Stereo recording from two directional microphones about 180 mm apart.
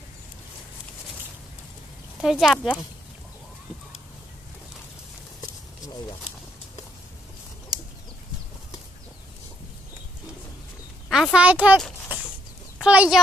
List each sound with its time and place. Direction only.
2.2 s speech: centre (ahead or behind)
11.1 s speech: centre (ahead or behind)
12.8 s speech: 5° right (ahead or behind)